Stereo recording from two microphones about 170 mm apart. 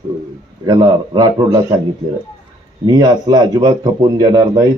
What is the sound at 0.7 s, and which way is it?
Speech, 25° right (ahead or behind).